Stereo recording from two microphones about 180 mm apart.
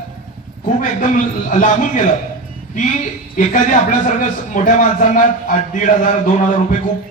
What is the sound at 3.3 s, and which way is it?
A man's voice, 45° left (ahead or behind).